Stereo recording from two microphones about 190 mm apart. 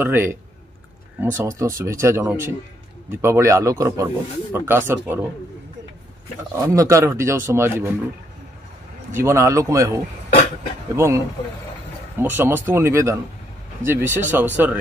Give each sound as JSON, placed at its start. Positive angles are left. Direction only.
{"t": 0.0, "sound": "speech", "side_deg": -10}
{"t": 6.5, "sound": "speech", "side_deg": -15}
{"t": 9.1, "sound": "speech", "side_deg": -15}